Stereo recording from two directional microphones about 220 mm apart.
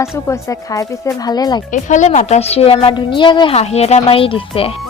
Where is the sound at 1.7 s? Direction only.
35° left (ahead or behind).